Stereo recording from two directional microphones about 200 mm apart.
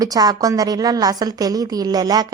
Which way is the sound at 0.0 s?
20° right (ahead or behind).